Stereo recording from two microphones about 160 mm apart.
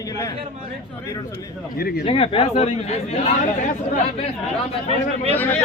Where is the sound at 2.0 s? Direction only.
35° left (ahead or behind).